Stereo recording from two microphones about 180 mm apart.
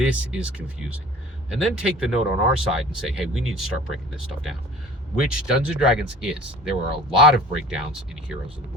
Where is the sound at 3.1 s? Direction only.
Centre (ahead or behind).